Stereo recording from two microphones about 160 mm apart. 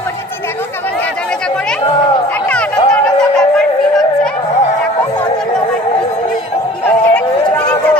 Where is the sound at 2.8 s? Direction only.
5° left (ahead or behind).